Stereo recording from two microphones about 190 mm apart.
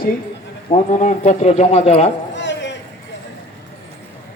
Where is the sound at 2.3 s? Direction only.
65° left (ahead or behind).